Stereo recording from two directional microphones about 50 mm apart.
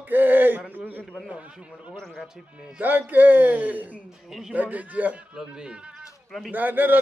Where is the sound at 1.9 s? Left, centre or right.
Centre.